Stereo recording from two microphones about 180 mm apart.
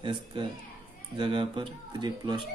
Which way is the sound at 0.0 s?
30° right (ahead or behind).